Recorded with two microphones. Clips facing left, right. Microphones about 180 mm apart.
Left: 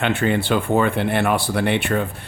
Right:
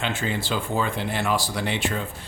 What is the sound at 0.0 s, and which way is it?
Speech, 60° left (ahead or behind).